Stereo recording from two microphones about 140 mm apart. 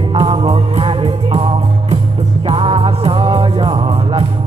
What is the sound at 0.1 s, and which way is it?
Music, 45° right (ahead or behind).